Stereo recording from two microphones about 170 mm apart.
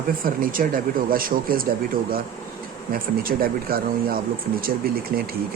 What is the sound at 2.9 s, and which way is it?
Speech, 60° right (ahead or behind).